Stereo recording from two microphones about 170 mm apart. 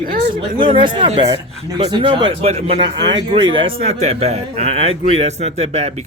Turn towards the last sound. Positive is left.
turn(degrees=-40)  # may be behind; listen again after turning